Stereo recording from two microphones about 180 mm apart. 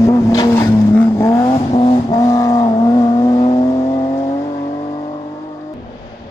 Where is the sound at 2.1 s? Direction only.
20° left (ahead or behind).